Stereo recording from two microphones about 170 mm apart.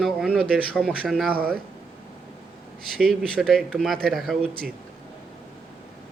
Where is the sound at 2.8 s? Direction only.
Centre (ahead or behind).